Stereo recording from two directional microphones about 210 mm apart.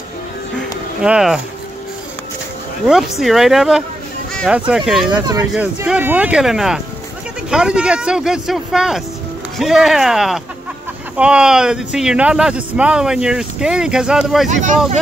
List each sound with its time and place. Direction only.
0.6 s music: 5° right (ahead or behind)
2.9 s speech: centre (ahead or behind)
14.5 s speech: 35° right (ahead or behind)